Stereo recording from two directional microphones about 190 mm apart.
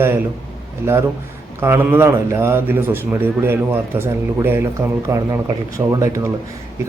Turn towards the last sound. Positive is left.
turn(degrees=-15)  # may be behind; listen again after turning